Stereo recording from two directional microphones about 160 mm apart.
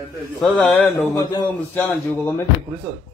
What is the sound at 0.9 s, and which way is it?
A man's voice, 20° left (ahead or behind).